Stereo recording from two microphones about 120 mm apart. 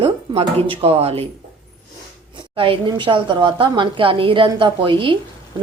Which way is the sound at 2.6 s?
45° right (ahead or behind).